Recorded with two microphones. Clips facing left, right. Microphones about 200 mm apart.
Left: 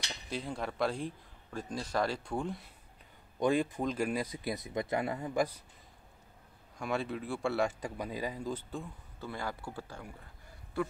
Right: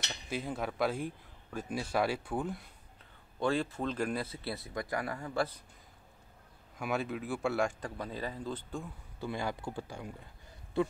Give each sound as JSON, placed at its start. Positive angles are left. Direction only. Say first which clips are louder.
{"t": 0.1, "sound": "speech", "louder": "right 1 dB", "side_deg": 0}
{"t": 3.3, "sound": "speech", "louder": "left 2 dB", "side_deg": 15}
{"t": 6.8, "sound": "speech", "louder": "even", "side_deg": 0}
{"t": 7.8, "sound": "speech", "louder": "left 2 dB", "side_deg": 10}
{"t": 9.2, "sound": "speech", "louder": "right 3 dB", "side_deg": -15}